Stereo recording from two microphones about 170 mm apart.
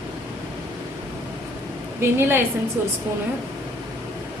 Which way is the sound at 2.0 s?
15° right (ahead or behind).